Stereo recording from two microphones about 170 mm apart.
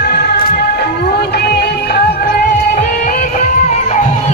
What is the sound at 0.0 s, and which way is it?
Music, 75° left (ahead or behind).